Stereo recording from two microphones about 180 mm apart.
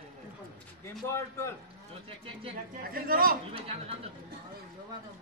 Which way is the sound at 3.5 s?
30° right (ahead or behind).